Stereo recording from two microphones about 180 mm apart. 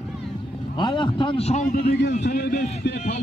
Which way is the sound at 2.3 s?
55° left (ahead or behind).